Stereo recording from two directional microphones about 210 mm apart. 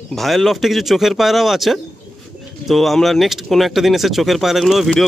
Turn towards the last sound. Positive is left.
turn(degrees=0)  # may be behind; listen again after turning